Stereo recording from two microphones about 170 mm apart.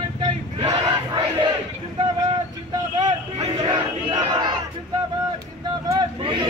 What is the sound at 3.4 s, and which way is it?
Battle cry, 35° right (ahead or behind).